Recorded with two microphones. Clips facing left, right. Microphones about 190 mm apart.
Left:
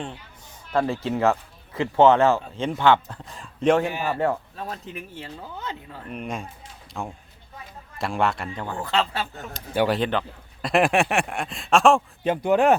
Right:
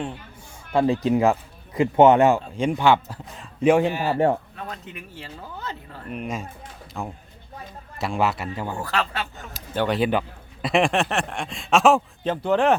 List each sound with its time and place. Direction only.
0.7 s speech: 15° right (ahead or behind)
4.0 s speech: 25° right (ahead or behind)
4.5 s speech: 30° left (ahead or behind)
6.1 s a man's voice: centre (ahead or behind)
8.8 s speech: 20° left (ahead or behind)
9.7 s speech: 5° left (ahead or behind)
10.0 s a man's voice: 10° right (ahead or behind)
12.2 s speech: 10° left (ahead or behind)